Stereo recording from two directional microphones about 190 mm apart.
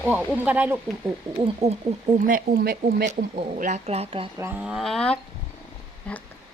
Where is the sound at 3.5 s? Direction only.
40° right (ahead or behind).